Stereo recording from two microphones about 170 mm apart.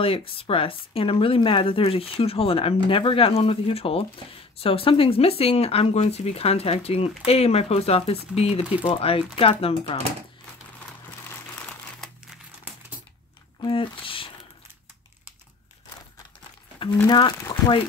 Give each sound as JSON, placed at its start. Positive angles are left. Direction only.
{"t": 0.0, "sound": "speech", "side_deg": 30}
{"t": 13.6, "sound": "speech", "side_deg": 30}
{"t": 16.9, "sound": "speech", "side_deg": 15}
{"t": 17.2, "sound": "speech", "side_deg": 25}